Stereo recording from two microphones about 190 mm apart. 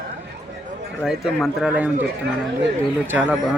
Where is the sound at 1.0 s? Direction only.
Centre (ahead or behind).